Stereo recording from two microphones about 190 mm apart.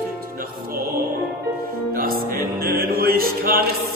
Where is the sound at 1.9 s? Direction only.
50° right (ahead or behind).